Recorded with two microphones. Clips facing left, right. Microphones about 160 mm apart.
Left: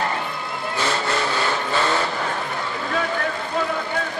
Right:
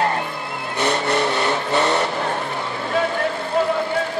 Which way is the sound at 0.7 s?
20° right (ahead or behind).